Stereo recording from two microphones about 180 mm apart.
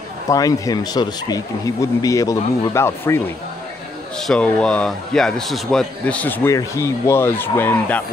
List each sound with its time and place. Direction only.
0.3 s speech: 20° left (ahead or behind)
4.2 s a man's voice: 5° left (ahead or behind)